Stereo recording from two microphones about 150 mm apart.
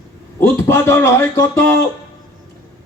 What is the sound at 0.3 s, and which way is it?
A man's voice, 15° left (ahead or behind).